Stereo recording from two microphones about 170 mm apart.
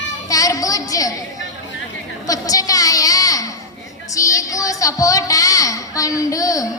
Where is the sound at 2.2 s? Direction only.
20° left (ahead or behind).